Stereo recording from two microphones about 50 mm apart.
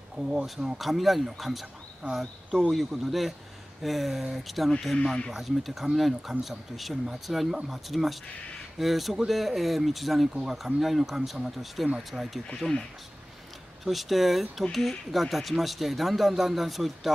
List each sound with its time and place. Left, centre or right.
0.1 s speech: right
0.7 s speech: centre
2.7 s speech: centre
13.8 s speech: centre